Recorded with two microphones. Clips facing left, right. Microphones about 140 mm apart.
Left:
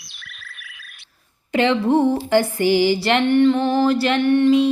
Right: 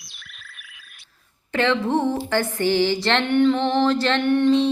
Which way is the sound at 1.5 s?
15° left (ahead or behind).